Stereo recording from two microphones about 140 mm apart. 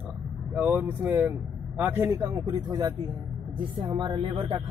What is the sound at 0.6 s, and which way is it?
Speech, 10° right (ahead or behind).